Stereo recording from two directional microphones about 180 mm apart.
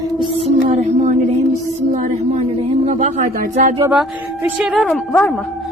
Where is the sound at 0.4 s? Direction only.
40° right (ahead or behind).